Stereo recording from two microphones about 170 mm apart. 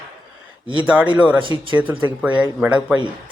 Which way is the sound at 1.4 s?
30° right (ahead or behind).